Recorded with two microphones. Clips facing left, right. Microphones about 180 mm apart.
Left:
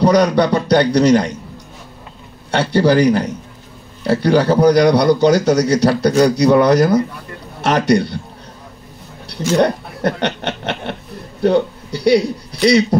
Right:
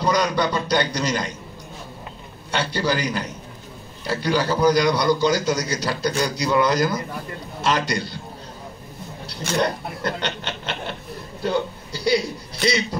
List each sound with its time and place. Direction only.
0.0 s a man's voice: 70° left (ahead or behind)
2.5 s a man's voice: 65° left (ahead or behind)
9.6 s a man's voice: 65° left (ahead or behind)